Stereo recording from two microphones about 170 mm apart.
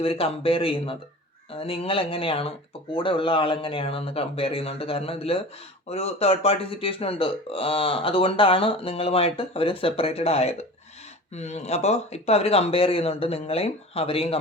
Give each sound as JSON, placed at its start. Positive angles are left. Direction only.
{"t": 0.0, "sound": "speech", "side_deg": 35}